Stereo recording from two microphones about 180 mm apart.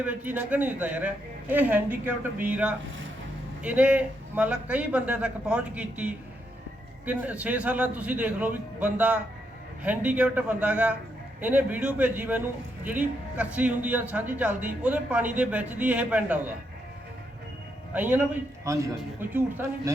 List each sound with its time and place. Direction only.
0.0 s a man's voice: 10° right (ahead or behind)
17.9 s a man's voice: 10° right (ahead or behind)